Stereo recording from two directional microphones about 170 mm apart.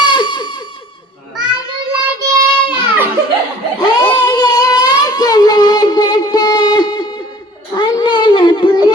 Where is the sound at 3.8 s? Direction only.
25° left (ahead or behind).